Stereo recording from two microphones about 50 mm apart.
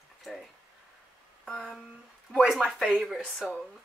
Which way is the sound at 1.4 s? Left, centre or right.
Centre.